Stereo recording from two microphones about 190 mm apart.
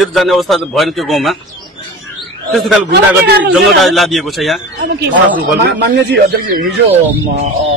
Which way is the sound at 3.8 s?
Centre (ahead or behind).